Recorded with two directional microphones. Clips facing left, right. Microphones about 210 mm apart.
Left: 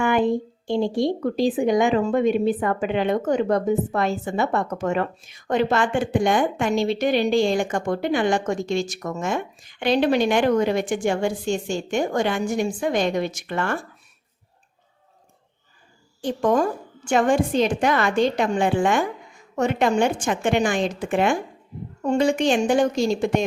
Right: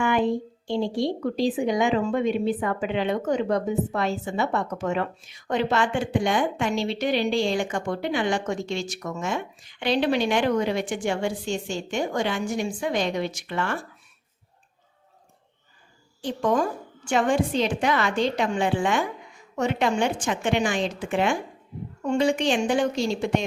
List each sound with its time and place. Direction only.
0.0 s a woman's voice: 50° left (ahead or behind)
16.2 s a woman's voice: 50° left (ahead or behind)